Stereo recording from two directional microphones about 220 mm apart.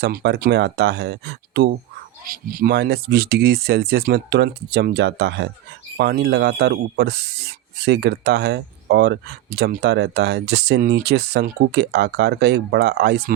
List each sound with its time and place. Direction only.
0.0 s speech: 50° right (ahead or behind)